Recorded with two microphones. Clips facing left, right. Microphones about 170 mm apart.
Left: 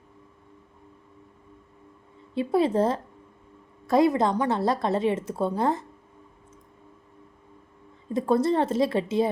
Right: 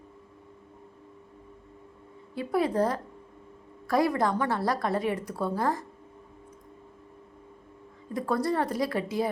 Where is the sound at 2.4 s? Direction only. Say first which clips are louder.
Left 4 dB; 25° left (ahead or behind).